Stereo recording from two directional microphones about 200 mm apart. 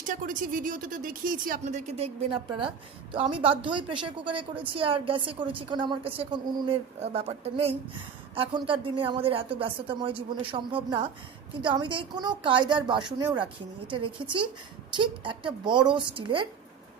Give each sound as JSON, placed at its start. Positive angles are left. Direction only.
{"t": 0.0, "sound": "a woman's voice", "side_deg": -40}
{"t": 13.8, "sound": "a woman's voice", "side_deg": -25}